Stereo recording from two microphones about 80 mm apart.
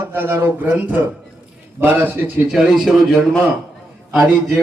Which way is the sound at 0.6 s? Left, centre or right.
Centre.